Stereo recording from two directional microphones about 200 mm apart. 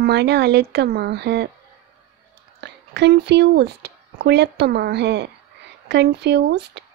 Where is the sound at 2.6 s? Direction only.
55° right (ahead or behind).